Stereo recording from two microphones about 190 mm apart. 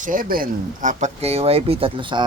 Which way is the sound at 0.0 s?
45° right (ahead or behind).